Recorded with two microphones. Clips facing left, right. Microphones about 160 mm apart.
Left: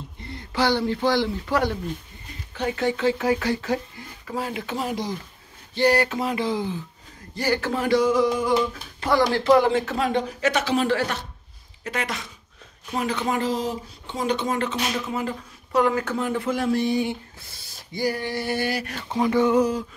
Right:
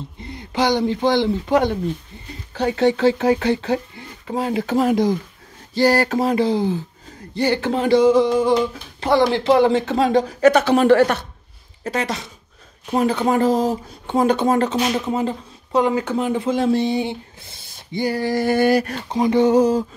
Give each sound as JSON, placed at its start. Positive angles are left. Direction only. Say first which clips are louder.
{"t": 0.3, "sound": "speech", "louder": "right 3 dB", "side_deg": -20}
{"t": 2.5, "sound": "speech", "louder": "right 7 dB", "side_deg": -30}
{"t": 4.8, "sound": "a sound", "louder": "right 11 dB", "side_deg": -50}
{"t": 5.8, "sound": "speech", "louder": "right 4 dB", "side_deg": -40}
{"t": 7.3, "sound": "speech", "louder": "right 5 dB", "side_deg": -25}
{"t": 10.6, "sound": "speech", "louder": "right 9 dB", "side_deg": -55}
{"t": 11.8, "sound": "speech", "louder": "right 5 dB", "side_deg": -30}
{"t": 18.2, "sound": "a sound", "louder": "right 9 dB", "side_deg": -45}
{"t": 19.0, "sound": "speech", "louder": "right 2 dB", "side_deg": -20}
{"t": 19.4, "sound": "speech", "louder": "right 5 dB", "side_deg": -35}